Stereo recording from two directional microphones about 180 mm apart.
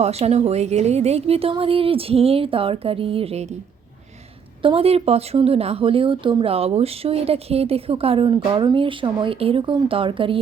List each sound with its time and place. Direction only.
0.0 s speech: 35° right (ahead or behind)
4.6 s speech: 30° right (ahead or behind)